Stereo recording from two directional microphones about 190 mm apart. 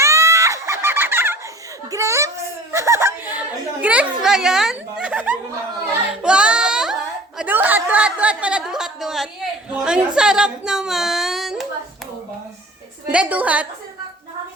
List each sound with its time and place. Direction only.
0.0 s screaming: 15° right (ahead or behind)
1.9 s giggle: 15° right (ahead or behind)
2.7 s a sound: 15° right (ahead or behind)
9.8 s speech: 5° right (ahead or behind)
13.1 s a woman's voice: 5° right (ahead or behind)